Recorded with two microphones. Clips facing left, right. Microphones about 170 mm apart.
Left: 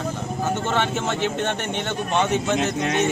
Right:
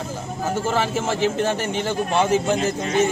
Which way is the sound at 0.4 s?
5° right (ahead or behind).